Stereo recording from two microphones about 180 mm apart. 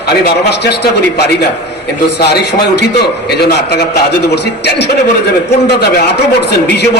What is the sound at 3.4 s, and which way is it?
A man's voice, 60° left (ahead or behind).